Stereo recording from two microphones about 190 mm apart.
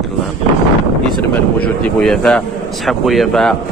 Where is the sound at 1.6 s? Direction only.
5° left (ahead or behind).